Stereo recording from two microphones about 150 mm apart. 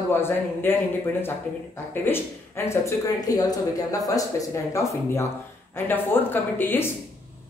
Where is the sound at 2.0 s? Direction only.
15° left (ahead or behind).